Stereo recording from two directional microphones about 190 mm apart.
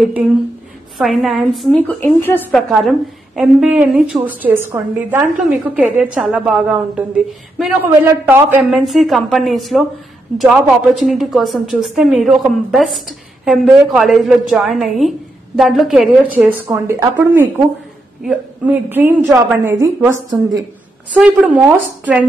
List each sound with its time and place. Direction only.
0.9 s a woman's voice: centre (ahead or behind)
8.6 s a woman's voice: centre (ahead or behind)
18.9 s a woman's voice: 10° right (ahead or behind)